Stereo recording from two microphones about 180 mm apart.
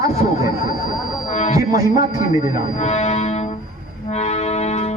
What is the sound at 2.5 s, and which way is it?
Music, 40° left (ahead or behind).